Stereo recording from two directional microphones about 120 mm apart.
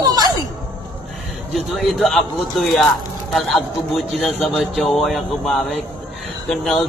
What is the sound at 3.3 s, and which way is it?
A man's voice, centre (ahead or behind).